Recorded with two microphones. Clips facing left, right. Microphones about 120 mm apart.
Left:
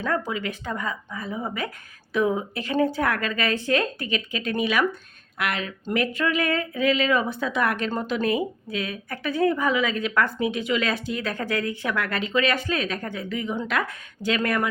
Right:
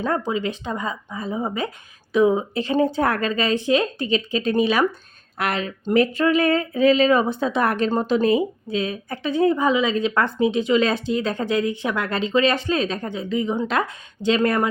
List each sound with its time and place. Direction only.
0.3 s a woman's voice: 25° right (ahead or behind)